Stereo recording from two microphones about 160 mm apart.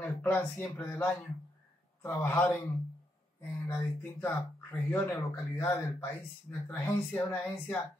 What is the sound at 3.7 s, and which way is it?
Speech, 15° left (ahead or behind).